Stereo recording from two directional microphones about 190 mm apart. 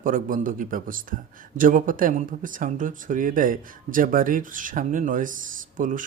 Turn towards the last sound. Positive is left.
turn(degrees=-45)  # may be behind; listen again after turning